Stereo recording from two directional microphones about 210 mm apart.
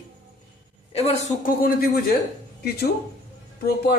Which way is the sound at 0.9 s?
30° left (ahead or behind).